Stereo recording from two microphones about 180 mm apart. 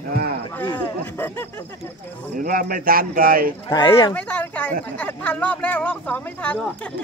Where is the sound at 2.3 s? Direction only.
50° right (ahead or behind).